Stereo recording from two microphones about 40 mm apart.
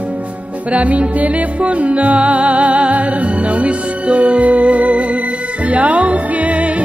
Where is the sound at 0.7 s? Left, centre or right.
Right.